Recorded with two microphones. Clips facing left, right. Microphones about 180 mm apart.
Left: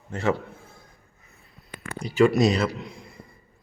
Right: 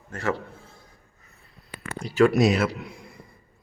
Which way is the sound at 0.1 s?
20° left (ahead or behind).